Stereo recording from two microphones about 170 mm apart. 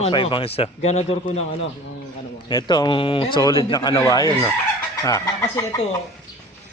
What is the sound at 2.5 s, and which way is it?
A man's voice, 25° left (ahead or behind).